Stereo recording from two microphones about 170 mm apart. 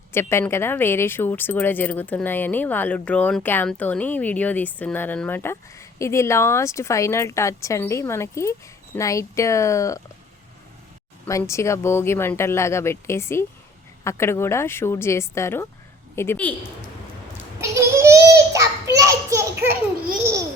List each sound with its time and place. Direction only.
0.1 s speech: 15° left (ahead or behind)
11.3 s speech: 20° left (ahead or behind)
17.6 s children playing: 15° right (ahead or behind)